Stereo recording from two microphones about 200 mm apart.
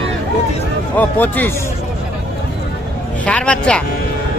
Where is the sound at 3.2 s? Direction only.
5° left (ahead or behind).